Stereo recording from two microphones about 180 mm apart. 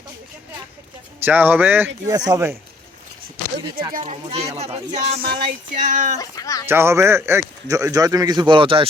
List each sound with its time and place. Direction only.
1.2 s speech: 10° right (ahead or behind)
3.7 s speech: 25° right (ahead or behind); by 6.1 s 45° right (ahead or behind)
6.1 s speech: 20° left (ahead or behind)
6.7 s speech: 15° right (ahead or behind); by 8.9 s 30° right (ahead or behind)